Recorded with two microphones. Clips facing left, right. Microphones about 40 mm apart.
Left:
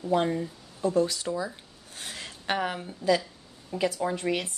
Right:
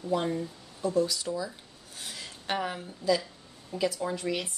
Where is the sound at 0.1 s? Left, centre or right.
Left.